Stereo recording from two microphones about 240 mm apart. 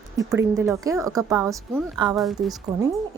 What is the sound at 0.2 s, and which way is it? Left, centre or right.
Speech, centre.